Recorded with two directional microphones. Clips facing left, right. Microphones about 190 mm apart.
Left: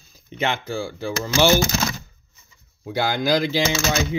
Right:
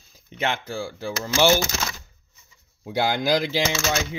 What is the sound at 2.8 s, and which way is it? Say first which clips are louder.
Speech: left 1 dB; 20° right (ahead or behind).